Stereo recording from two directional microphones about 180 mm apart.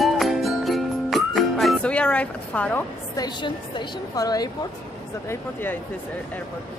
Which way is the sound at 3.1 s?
25° left (ahead or behind).